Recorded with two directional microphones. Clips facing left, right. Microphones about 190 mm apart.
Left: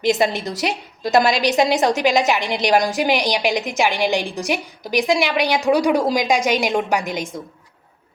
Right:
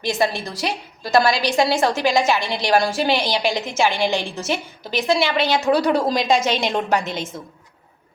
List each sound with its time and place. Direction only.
0.0 s a woman's voice: 20° left (ahead or behind)